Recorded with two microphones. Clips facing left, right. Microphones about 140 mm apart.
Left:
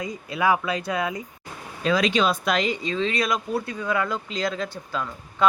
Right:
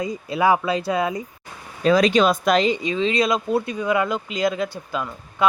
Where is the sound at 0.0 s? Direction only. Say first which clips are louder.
Right 4 dB; 30° right (ahead or behind); by 2.6 s 45° right (ahead or behind).